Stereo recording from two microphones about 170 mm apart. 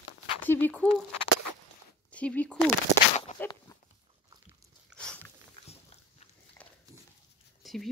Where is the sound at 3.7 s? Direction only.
20° left (ahead or behind).